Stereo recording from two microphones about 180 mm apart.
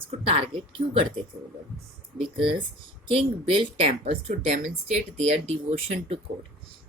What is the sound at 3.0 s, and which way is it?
A woman's voice, 30° right (ahead or behind).